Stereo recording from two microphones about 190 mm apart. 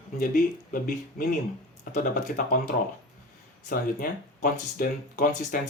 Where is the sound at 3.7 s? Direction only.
45° left (ahead or behind).